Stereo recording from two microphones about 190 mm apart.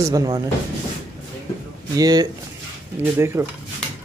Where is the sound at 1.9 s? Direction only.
20° right (ahead or behind).